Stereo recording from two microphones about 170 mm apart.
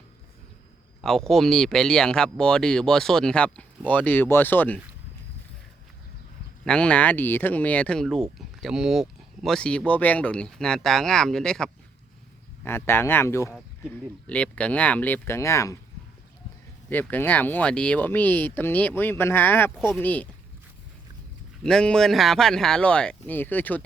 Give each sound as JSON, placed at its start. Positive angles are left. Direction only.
{"t": 1.0, "sound": "speech", "side_deg": 0}
{"t": 6.7, "sound": "speech", "side_deg": 5}
{"t": 12.6, "sound": "speech", "side_deg": 15}
{"t": 16.9, "sound": "speech", "side_deg": 10}
{"t": 19.7, "sound": "speech", "side_deg": -5}
{"t": 20.0, "sound": "speech", "side_deg": 10}
{"t": 21.6, "sound": "speech", "side_deg": 5}